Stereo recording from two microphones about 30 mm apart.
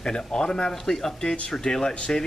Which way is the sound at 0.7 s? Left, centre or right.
Centre.